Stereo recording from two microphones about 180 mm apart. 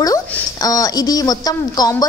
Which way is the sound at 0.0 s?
20° left (ahead or behind).